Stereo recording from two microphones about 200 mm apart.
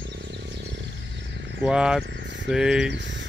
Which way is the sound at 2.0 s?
65° right (ahead or behind).